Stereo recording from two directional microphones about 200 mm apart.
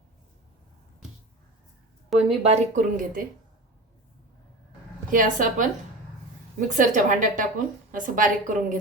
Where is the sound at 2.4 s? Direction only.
35° right (ahead or behind).